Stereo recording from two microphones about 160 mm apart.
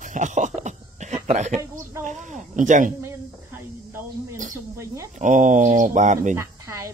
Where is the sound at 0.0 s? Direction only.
50° right (ahead or behind).